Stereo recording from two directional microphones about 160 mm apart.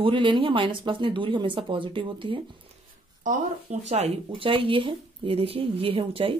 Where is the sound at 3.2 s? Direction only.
45° right (ahead or behind).